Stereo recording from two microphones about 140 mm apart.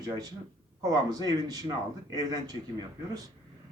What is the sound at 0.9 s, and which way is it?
Speech, 25° right (ahead or behind).